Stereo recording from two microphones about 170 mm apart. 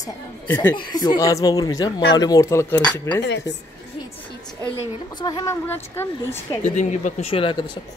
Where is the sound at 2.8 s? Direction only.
10° left (ahead or behind).